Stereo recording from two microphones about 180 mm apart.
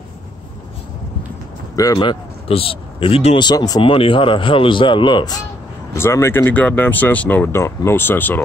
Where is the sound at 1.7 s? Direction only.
20° left (ahead or behind).